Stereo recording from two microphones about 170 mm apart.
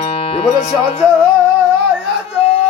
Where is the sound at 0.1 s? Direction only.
35° left (ahead or behind).